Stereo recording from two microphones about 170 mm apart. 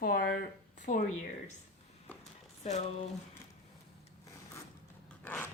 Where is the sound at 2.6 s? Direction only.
40° left (ahead or behind).